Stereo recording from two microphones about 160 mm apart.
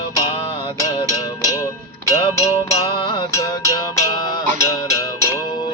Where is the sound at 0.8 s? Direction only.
20° left (ahead or behind).